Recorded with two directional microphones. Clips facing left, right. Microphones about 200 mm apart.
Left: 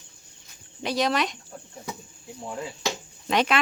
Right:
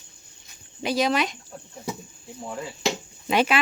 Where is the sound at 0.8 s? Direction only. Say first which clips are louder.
Right 2 dB; centre (ahead or behind).